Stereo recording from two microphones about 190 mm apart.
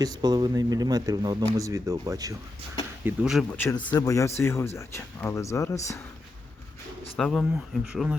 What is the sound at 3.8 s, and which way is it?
Speech, 25° left (ahead or behind).